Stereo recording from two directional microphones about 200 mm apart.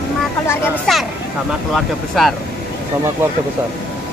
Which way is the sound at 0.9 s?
Centre (ahead or behind).